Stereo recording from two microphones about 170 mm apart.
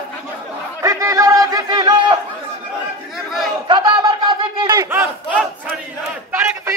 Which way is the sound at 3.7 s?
25° right (ahead or behind).